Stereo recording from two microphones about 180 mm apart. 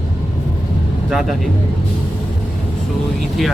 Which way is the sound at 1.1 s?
Centre (ahead or behind).